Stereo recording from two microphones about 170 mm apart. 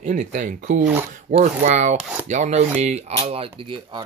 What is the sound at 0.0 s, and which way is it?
Speech, 45° right (ahead or behind).